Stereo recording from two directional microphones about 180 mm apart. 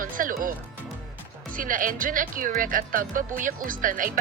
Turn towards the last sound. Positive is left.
turn(degrees=-50)  # may be behind; listen again after turning